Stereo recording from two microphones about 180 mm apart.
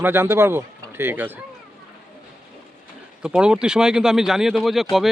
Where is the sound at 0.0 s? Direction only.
10° right (ahead or behind).